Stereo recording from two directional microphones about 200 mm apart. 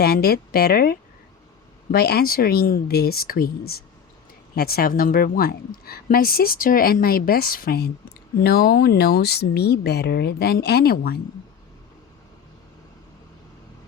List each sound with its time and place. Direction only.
0.0 s a woman's voice: 50° left (ahead or behind)